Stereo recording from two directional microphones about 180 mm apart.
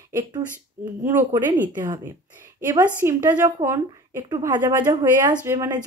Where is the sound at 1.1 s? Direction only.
10° right (ahead or behind).